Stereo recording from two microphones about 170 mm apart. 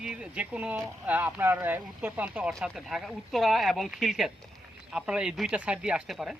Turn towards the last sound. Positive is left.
turn(degrees=-5)  # may be behind; listen again after turning